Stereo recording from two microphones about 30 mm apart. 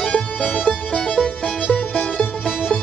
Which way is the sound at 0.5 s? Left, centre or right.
Left.